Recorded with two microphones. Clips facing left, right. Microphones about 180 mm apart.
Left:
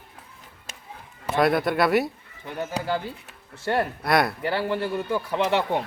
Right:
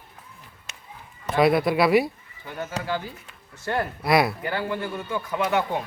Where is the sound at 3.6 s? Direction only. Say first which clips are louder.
Left 2 dB; 30° left (ahead or behind).